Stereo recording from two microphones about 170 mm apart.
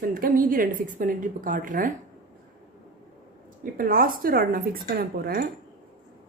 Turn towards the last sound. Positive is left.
turn(degrees=-65)  # may be behind; listen again after turning